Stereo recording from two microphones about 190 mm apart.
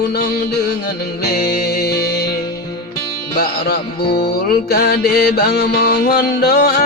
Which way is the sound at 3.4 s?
55° left (ahead or behind).